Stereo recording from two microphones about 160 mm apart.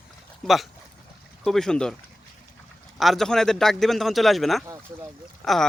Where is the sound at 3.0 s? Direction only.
Centre (ahead or behind).